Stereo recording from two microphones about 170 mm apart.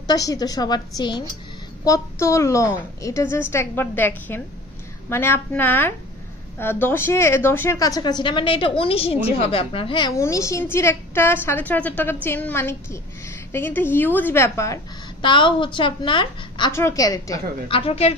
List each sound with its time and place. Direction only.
0.0 s a woman's voice: 20° left (ahead or behind)
10.1 s a woman's voice: 15° left (ahead or behind)
15.2 s a woman's voice: 30° left (ahead or behind)
17.6 s a woman's voice: 35° left (ahead or behind)